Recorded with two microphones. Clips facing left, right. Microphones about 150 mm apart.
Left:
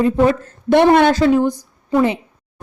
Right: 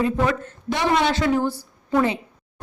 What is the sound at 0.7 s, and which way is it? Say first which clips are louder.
Speech: left 10 dB; 60° left (ahead or behind).